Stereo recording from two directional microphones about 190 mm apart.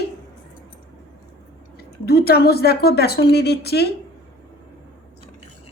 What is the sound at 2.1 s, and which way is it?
A woman's voice, 55° left (ahead or behind).